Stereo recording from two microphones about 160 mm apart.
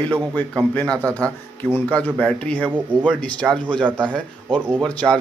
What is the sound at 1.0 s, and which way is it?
Speech, 20° right (ahead or behind).